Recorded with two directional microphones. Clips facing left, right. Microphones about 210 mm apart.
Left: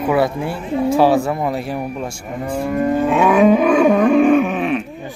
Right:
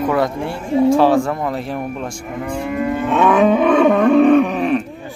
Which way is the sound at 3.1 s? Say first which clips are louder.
Even; 10° left (ahead or behind).